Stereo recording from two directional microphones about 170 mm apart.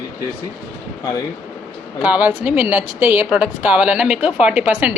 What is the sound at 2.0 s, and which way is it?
A woman's voice, 10° right (ahead or behind).